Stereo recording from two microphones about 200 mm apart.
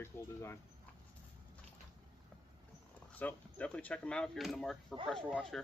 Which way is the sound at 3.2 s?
5° left (ahead or behind).